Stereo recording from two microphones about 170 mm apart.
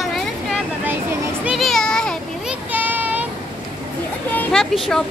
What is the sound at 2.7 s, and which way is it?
Child singing, 10° right (ahead or behind).